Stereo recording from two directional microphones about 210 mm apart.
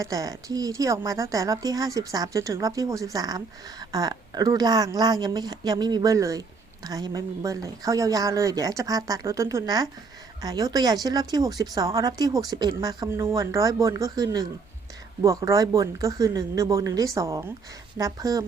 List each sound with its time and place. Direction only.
0.0 s a woman's voice: 15° right (ahead or behind)